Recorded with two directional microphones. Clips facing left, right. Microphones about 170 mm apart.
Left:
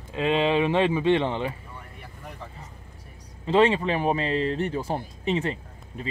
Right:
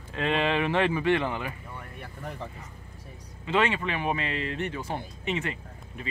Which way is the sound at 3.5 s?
30° left (ahead or behind).